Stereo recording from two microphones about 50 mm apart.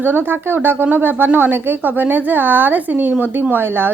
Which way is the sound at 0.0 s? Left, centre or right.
Right.